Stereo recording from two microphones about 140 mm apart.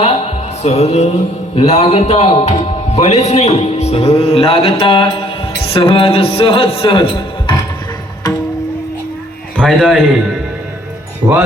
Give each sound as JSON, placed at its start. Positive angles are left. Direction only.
{"t": 0.0, "sound": "music", "side_deg": 45}
{"t": 1.5, "sound": "a man's voice", "side_deg": 45}
{"t": 9.6, "sound": "a man's voice", "side_deg": 0}
{"t": 11.2, "sound": "speech", "side_deg": -25}